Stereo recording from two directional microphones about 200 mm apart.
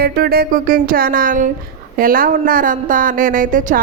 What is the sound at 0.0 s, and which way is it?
A woman's voice, 50° right (ahead or behind).